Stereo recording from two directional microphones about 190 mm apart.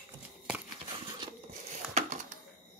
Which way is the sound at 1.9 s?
40° right (ahead or behind).